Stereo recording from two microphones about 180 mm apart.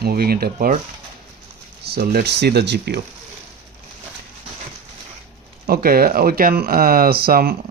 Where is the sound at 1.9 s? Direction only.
65° right (ahead or behind).